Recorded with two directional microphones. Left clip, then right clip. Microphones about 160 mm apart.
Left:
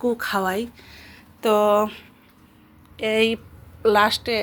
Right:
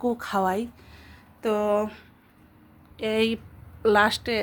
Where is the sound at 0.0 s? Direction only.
10° right (ahead or behind).